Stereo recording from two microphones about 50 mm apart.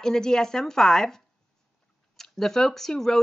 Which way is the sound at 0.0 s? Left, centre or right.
Centre.